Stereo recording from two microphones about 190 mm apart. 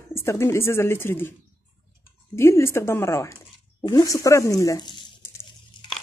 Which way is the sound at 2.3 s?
15° left (ahead or behind).